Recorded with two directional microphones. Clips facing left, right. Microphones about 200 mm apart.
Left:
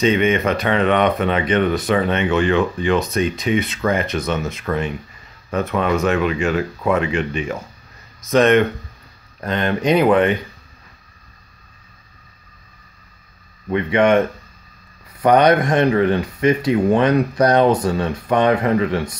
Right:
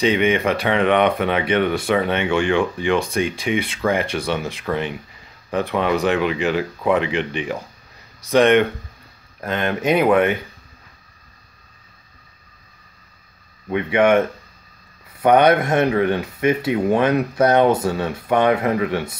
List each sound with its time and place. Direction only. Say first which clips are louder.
0.0 s speech: left 1 dB; 15° right (ahead or behind)
13.7 s speech: left 1 dB; 5° right (ahead or behind)